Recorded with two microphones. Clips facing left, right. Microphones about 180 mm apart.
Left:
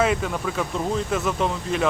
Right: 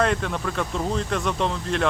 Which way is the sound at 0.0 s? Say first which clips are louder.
Left 1 dB; 5° left (ahead or behind).